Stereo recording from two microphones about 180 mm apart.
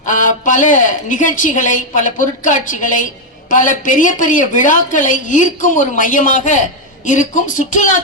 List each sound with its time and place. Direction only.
0.0 s a woman's voice: 45° left (ahead or behind)